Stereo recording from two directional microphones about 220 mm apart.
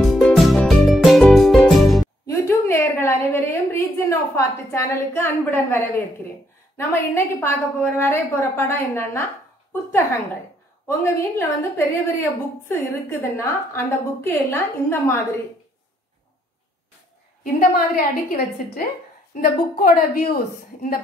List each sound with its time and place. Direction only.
0.0 s music: centre (ahead or behind)
2.2 s a sound: 10° left (ahead or behind)
6.8 s a woman's voice: 10° left (ahead or behind)
10.9 s a woman's voice: 10° left (ahead or behind)
17.4 s a woman's voice: 40° left (ahead or behind)